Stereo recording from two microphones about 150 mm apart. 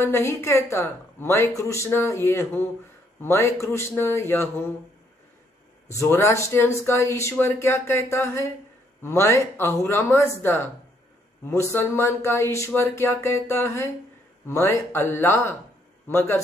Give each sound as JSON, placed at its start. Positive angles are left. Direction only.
{"t": 0.0, "sound": "speech", "side_deg": 15}
{"t": 5.9, "sound": "speech", "side_deg": 15}